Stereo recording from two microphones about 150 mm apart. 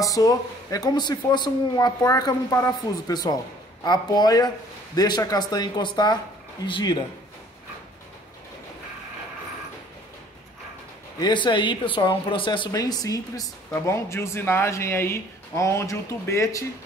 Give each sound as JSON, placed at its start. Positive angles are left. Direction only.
{"t": 0.0, "sound": "speech", "side_deg": 25}
{"t": 11.1, "sound": "speech", "side_deg": 30}